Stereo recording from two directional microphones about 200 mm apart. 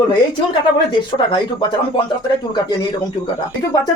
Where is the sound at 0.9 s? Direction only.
25° left (ahead or behind).